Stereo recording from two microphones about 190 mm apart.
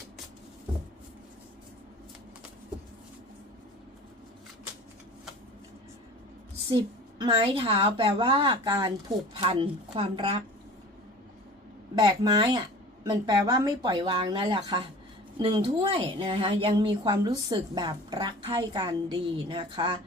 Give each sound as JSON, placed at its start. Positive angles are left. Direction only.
{"t": 6.7, "sound": "speech", "side_deg": -25}
{"t": 11.9, "sound": "speech", "side_deg": -20}